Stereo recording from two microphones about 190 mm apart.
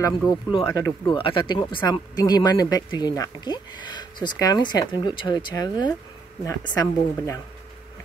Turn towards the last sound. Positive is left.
turn(degrees=20)  # may be behind; listen again after turning